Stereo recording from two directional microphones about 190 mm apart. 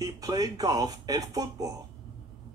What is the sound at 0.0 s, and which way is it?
Speech, 20° right (ahead or behind).